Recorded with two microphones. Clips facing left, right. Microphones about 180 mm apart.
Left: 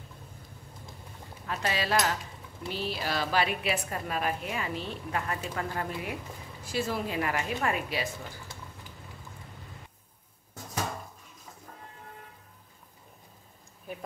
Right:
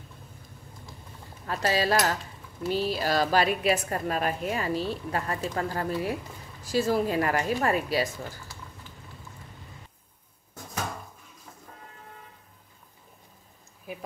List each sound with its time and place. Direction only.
1.5 s a woman's voice: 40° right (ahead or behind)